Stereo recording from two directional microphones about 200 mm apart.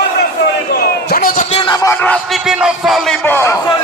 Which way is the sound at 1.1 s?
45° left (ahead or behind).